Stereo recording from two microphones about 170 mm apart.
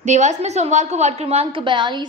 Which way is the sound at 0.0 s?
45° right (ahead or behind).